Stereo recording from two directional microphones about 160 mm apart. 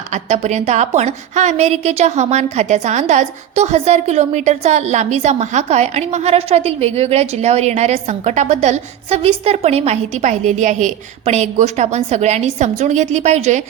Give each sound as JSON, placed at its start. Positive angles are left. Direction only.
{"t": 0.1, "sound": "a woman's voice", "side_deg": -45}